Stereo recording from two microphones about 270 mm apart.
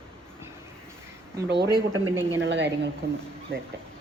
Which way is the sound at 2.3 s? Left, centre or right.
Right.